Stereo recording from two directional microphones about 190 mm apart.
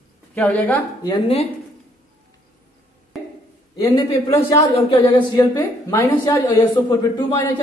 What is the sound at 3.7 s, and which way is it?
A man's voice, 20° left (ahead or behind).